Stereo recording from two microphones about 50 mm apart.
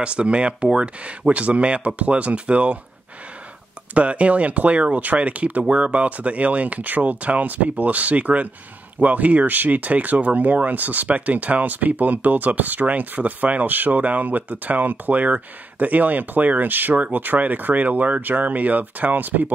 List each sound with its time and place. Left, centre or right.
0.0 s speech: right
3.9 s speech: right